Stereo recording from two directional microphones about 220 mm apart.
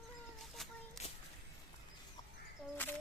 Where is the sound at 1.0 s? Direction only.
30° left (ahead or behind).